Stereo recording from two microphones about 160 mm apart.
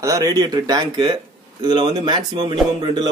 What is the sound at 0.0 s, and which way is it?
Speech, 20° right (ahead or behind).